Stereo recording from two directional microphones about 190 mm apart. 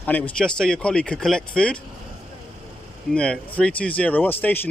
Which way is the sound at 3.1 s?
5° left (ahead or behind).